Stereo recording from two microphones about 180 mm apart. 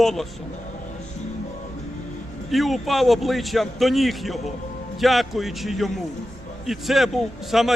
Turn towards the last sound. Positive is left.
turn(degrees=0)  # may be behind; listen again after turning